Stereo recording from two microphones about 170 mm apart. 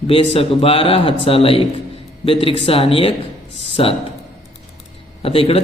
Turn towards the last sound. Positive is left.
turn(degrees=35)  # may be behind; listen again after turning